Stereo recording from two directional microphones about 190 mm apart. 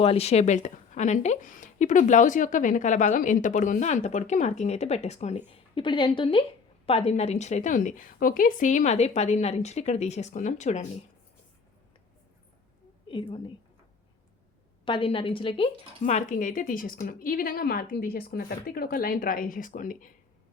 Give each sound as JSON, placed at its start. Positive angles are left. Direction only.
{"t": 0.0, "sound": "a woman's voice", "side_deg": 30}
{"t": 13.1, "sound": "a woman's voice", "side_deg": 25}
{"t": 14.8, "sound": "speech", "side_deg": 25}